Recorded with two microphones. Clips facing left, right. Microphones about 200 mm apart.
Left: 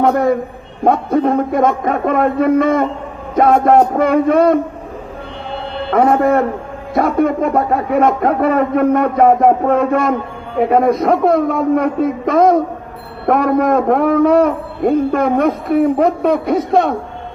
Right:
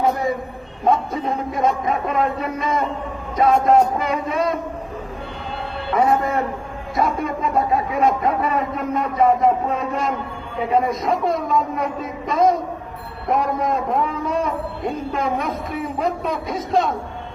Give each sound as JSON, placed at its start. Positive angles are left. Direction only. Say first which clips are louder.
{"t": 0.0, "sound": "speech", "louder": "left 7 dB", "side_deg": 65}
{"t": 5.9, "sound": "speech", "louder": "left 7 dB", "side_deg": 60}